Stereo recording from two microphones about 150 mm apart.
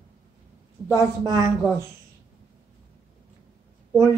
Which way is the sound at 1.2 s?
25° right (ahead or behind).